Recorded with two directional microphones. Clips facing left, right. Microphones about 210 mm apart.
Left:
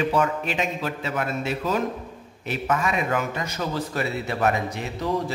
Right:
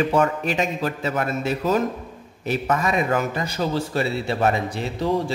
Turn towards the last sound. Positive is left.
turn(degrees=-30)  # may be behind; listen again after turning